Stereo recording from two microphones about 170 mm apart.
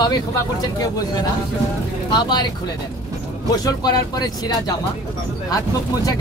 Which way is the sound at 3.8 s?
25° left (ahead or behind).